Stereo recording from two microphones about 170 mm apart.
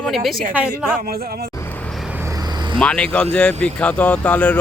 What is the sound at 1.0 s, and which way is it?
Speech, 60° right (ahead or behind).